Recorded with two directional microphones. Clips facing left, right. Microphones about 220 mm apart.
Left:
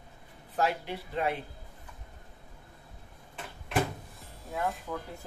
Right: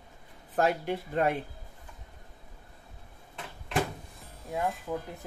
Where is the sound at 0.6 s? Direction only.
50° right (ahead or behind).